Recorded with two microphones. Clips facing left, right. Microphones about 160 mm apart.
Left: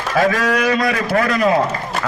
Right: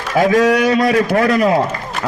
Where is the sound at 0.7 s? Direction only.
30° right (ahead or behind).